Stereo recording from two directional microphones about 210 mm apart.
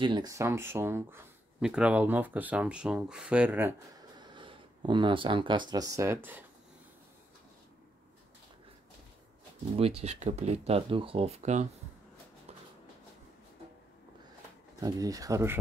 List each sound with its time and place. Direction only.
0.0 s speech: 20° right (ahead or behind)
4.2 s speech: 20° right (ahead or behind)
9.8 s speech: 30° right (ahead or behind)
14.8 s speech: 15° right (ahead or behind)